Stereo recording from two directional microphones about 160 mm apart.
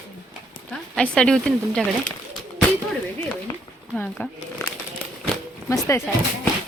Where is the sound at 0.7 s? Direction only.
5° left (ahead or behind).